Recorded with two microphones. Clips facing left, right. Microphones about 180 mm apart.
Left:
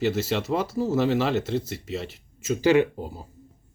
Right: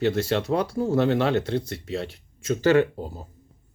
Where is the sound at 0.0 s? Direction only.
5° left (ahead or behind).